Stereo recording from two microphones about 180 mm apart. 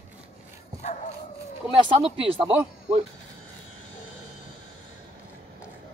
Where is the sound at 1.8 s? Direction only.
30° right (ahead or behind).